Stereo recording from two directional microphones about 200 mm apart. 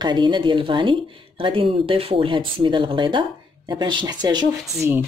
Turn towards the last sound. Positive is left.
turn(degrees=-15)  # may be behind; listen again after turning